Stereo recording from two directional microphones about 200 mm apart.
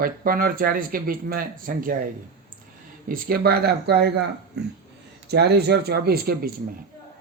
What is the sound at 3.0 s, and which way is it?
Speech, 45° right (ahead or behind).